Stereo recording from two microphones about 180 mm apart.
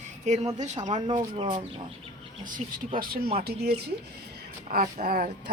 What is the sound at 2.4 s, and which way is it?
Speech, 45° right (ahead or behind).